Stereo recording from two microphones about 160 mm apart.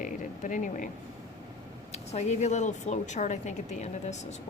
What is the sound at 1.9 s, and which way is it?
A woman's voice, 45° left (ahead or behind).